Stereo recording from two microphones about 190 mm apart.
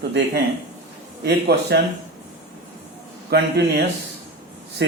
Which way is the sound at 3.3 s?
60° right (ahead or behind).